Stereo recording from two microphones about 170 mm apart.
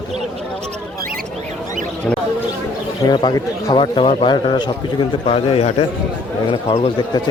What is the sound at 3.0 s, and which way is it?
A man's voice, 25° left (ahead or behind).